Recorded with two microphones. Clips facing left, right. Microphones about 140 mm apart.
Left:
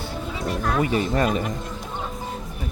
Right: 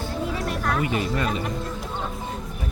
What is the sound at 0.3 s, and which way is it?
Music, 20° left (ahead or behind).